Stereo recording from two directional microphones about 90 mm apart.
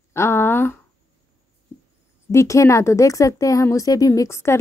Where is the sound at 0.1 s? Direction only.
30° left (ahead or behind).